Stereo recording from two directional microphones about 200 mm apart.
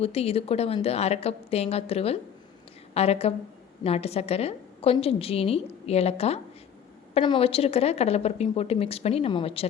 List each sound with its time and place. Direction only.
0.0 s a woman's voice: 30° left (ahead or behind)